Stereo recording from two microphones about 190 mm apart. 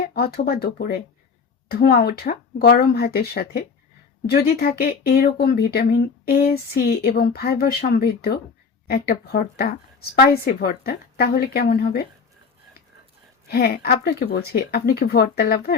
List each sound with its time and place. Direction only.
0.0 s a woman's voice: 55° left (ahead or behind)
4.6 s a woman's voice: 50° left (ahead or behind)
13.5 s speech: 55° left (ahead or behind)